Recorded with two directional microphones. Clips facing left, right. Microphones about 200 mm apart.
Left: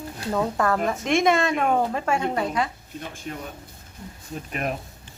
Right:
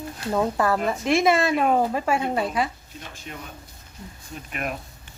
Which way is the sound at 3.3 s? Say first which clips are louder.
Left 4 dB; 45° left (ahead or behind).